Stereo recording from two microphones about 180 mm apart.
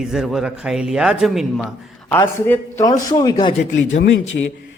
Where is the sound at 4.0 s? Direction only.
75° left (ahead or behind).